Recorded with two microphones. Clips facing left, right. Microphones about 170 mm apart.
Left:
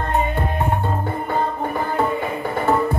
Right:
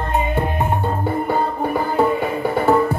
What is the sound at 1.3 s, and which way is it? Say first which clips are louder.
Music: right 1 dB; 10° right (ahead or behind).